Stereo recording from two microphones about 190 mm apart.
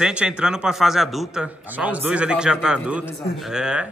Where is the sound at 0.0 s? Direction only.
5° right (ahead or behind).